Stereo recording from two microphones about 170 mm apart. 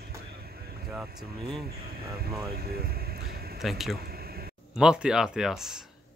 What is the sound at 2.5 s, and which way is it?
Vehicle, 65° right (ahead or behind).